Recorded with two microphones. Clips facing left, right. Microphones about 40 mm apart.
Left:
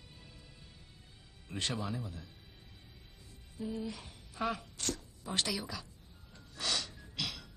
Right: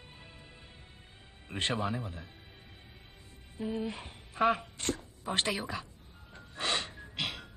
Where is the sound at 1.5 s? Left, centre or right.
Right.